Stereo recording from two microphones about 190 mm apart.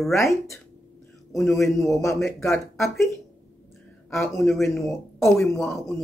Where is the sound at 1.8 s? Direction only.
15° left (ahead or behind).